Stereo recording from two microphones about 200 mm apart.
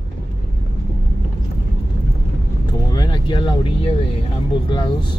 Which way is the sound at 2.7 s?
20° left (ahead or behind).